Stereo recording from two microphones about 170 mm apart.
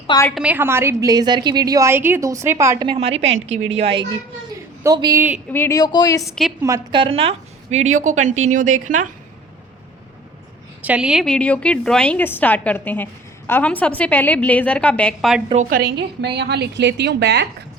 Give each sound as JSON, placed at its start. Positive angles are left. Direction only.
{"t": 0.3, "sound": "a woman's voice", "side_deg": -10}
{"t": 2.8, "sound": "a woman's voice", "side_deg": -35}
{"t": 4.8, "sound": "a woman's voice", "side_deg": -20}
{"t": 5.5, "sound": "speech", "side_deg": 15}
{"t": 6.6, "sound": "a woman's voice", "side_deg": -20}
{"t": 7.0, "sound": "a woman's voice", "side_deg": -35}
{"t": 10.8, "sound": "a woman's voice", "side_deg": -5}
{"t": 15.8, "sound": "a woman's voice", "side_deg": -75}